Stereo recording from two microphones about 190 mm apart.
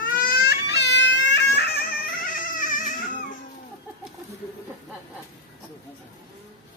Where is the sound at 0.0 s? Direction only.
45° left (ahead or behind).